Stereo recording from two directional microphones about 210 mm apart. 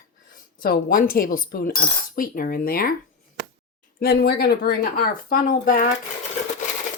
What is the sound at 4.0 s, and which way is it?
Speech, 50° left (ahead or behind).